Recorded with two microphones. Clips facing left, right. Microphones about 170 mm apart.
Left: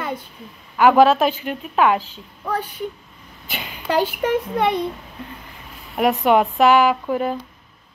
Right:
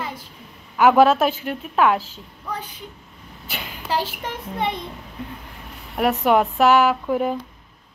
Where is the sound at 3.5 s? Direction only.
5° left (ahead or behind).